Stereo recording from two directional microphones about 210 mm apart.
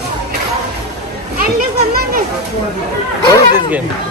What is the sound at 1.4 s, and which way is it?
Children playing, 45° right (ahead or behind).